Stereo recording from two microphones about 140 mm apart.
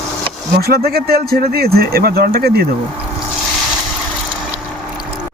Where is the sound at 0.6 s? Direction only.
90° right.